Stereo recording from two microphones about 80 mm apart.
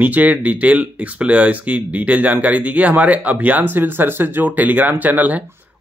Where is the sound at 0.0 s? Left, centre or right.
Centre.